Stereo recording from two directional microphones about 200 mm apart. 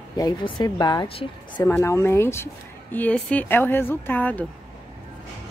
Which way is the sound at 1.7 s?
15° left (ahead or behind).